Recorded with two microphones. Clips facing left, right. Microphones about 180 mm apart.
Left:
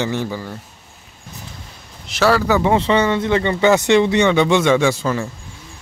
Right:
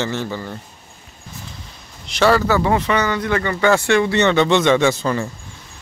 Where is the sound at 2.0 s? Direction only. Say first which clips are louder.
Right 1 dB; 5° left (ahead or behind).